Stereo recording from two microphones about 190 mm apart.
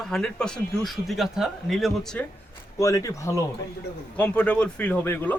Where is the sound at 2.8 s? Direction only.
15° left (ahead or behind).